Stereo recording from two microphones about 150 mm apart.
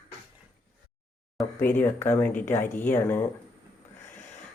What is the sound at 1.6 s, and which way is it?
Speech, 15° left (ahead or behind).